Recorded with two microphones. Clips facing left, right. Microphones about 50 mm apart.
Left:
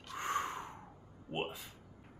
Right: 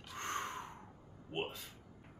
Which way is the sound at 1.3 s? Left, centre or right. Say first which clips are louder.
Left 2 dB; centre.